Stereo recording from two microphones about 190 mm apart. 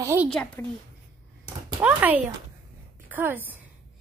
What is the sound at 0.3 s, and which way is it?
Speech, 5° left (ahead or behind).